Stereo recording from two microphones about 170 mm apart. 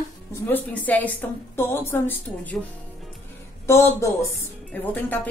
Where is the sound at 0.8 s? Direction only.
10° left (ahead or behind).